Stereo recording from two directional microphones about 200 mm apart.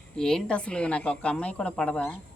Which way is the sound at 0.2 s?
5° left (ahead or behind).